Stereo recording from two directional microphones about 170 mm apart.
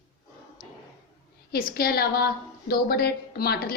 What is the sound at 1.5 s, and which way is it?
A woman's voice, 65° left (ahead or behind).